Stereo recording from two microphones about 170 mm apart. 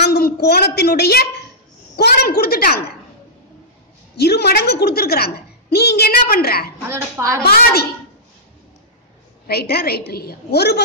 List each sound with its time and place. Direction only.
0.0 s a woman's voice: 65° left (ahead or behind)
4.2 s a woman's voice: 70° left (ahead or behind)
6.9 s a child's voice: 15° right (ahead or behind)
7.4 s a woman's voice: 65° left (ahead or behind)
9.5 s a woman's voice: 70° left (ahead or behind)